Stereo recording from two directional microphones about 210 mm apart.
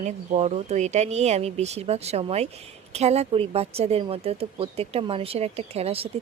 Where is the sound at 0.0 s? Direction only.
30° right (ahead or behind).